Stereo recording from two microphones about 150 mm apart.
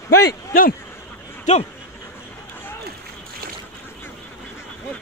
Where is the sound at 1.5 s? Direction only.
55° left (ahead or behind).